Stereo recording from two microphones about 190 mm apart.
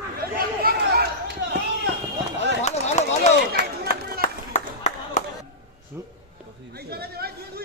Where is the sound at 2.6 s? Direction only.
35° left (ahead or behind).